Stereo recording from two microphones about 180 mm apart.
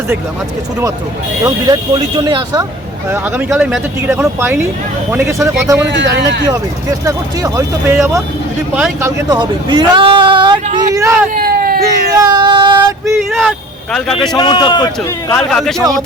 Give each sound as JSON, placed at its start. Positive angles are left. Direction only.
{"t": 1.5, "sound": "speech", "side_deg": -20}
{"t": 3.1, "sound": "speech", "side_deg": -10}
{"t": 5.9, "sound": "speech", "side_deg": -75}
{"t": 7.0, "sound": "speech", "side_deg": -15}
{"t": 9.0, "sound": "speech", "side_deg": -15}
{"t": 11.3, "sound": "a sound", "side_deg": -55}
{"t": 12.1, "sound": "speech", "side_deg": -20}
{"t": 13.1, "sound": "a man's voice", "side_deg": 0}
{"t": 14.3, "sound": "a man's voice", "side_deg": 25}
{"t": 15.3, "sound": "a man's voice", "side_deg": 5}